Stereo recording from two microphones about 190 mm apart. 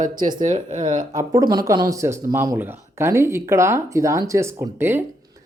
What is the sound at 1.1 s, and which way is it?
Speech, 20° right (ahead or behind).